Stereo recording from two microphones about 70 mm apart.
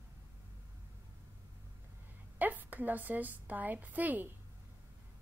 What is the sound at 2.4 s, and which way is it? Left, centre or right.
A woman's voice, right.